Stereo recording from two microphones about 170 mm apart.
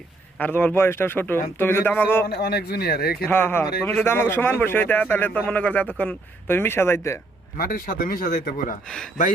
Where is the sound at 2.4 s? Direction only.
70° left (ahead or behind).